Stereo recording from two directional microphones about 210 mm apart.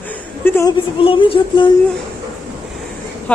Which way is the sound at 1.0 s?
25° left (ahead or behind).